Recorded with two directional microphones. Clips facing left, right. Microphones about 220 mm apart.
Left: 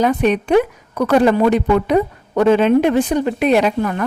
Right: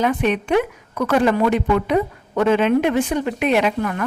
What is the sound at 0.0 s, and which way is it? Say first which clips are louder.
A woman's voice: left 4 dB; 40° left (ahead or behind).